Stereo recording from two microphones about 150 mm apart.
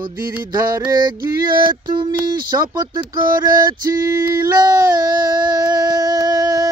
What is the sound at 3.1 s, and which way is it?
Female singing, 25° right (ahead or behind).